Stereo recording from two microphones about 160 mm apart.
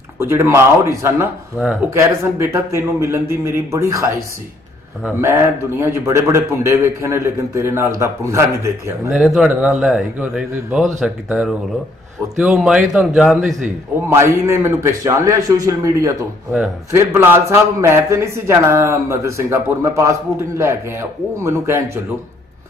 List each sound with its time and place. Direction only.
0.2 s a man's voice: 15° right (ahead or behind)
5.2 s a man's voice: 15° right (ahead or behind)
9.1 s a man's voice: 5° right (ahead or behind)
14.0 s a man's voice: 15° right (ahead or behind)